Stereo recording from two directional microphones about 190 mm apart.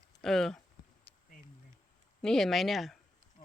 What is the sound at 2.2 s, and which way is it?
Speech, centre (ahead or behind).